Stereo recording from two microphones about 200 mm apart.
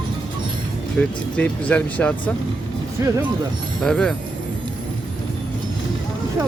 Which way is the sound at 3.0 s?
15° right (ahead or behind).